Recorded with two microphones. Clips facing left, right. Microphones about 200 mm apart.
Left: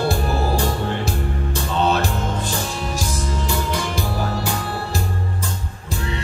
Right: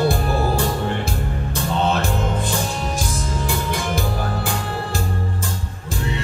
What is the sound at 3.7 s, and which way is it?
Music, 50° right (ahead or behind).